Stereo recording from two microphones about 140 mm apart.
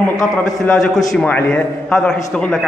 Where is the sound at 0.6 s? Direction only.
Centre (ahead or behind).